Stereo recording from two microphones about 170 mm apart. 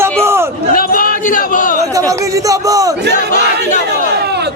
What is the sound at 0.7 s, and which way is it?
A man's voice, 60° left (ahead or behind).